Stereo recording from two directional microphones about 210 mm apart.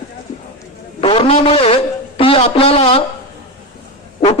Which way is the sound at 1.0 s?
25° left (ahead or behind).